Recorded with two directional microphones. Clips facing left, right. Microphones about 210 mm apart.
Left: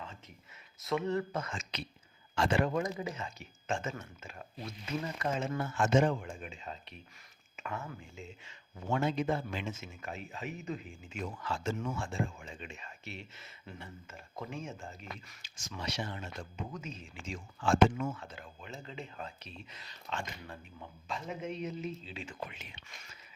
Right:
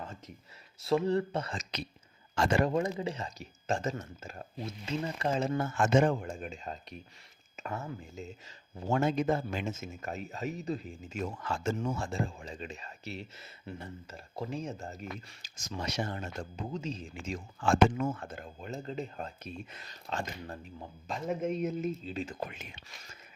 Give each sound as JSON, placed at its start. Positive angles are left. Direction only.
{"t": 0.8, "sound": "speech", "side_deg": -30}
{"t": 2.7, "sound": "speech", "side_deg": -30}
{"t": 4.6, "sound": "speech", "side_deg": -30}
{"t": 6.2, "sound": "speech", "side_deg": -45}
{"t": 16.6, "sound": "speech", "side_deg": -30}